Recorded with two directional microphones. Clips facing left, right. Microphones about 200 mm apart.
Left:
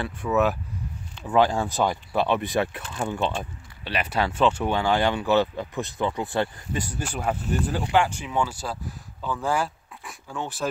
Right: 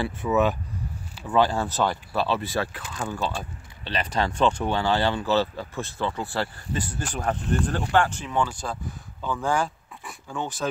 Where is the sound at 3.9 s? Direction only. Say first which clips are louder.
Even; 10° left (ahead or behind).